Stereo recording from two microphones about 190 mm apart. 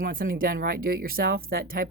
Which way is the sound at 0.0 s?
50° right (ahead or behind).